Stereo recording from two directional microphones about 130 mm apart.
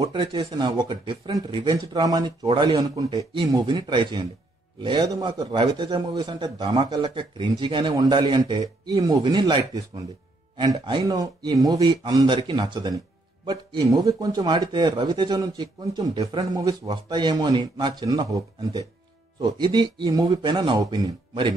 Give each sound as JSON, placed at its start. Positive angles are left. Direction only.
{"t": 0.0, "sound": "speech", "side_deg": -35}